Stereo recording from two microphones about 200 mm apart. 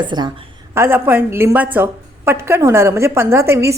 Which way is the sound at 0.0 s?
20° right (ahead or behind).